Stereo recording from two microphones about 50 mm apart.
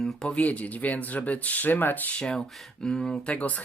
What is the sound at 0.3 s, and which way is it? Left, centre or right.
Speech, left.